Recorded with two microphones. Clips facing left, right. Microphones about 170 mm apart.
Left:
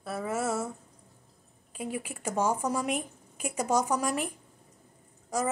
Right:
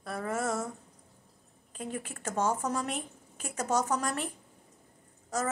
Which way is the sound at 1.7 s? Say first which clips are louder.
Left 3 dB; 10° left (ahead or behind).